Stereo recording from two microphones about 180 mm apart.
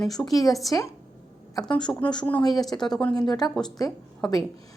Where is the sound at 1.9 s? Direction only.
5° left (ahead or behind).